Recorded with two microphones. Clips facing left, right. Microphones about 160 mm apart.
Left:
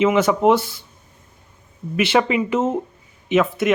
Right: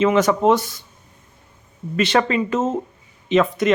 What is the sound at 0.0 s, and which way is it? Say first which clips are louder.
Speech: even; 10° left (ahead or behind).